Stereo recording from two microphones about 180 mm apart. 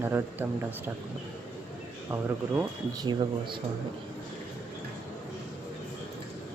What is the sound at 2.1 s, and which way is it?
Speech, 15° right (ahead or behind).